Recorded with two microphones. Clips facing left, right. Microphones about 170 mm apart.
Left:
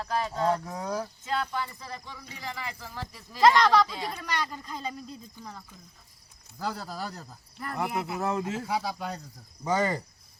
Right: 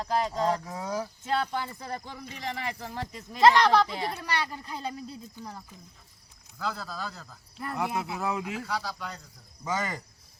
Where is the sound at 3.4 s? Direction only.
Centre (ahead or behind).